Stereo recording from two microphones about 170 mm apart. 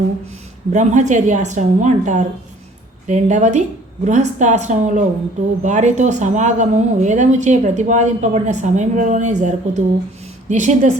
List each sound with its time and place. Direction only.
0.7 s speech: 45° right (ahead or behind)